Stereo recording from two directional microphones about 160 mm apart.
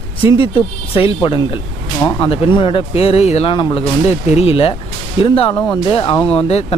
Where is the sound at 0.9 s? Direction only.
35° left (ahead or behind).